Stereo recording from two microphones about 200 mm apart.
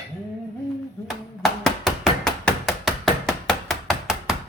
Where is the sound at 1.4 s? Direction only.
Centre (ahead or behind).